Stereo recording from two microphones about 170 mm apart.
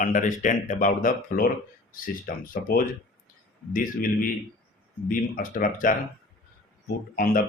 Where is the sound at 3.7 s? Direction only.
55° left (ahead or behind).